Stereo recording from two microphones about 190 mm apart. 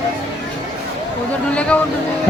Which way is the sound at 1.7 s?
5° left (ahead or behind).